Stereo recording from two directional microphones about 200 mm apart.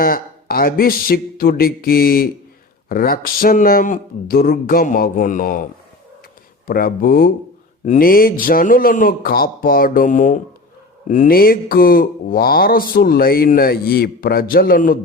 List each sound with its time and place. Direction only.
0.0 s speech: 45° left (ahead or behind)
6.7 s speech: 45° left (ahead or behind)